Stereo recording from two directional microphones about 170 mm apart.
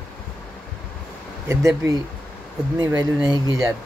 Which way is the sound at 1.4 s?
15° right (ahead or behind).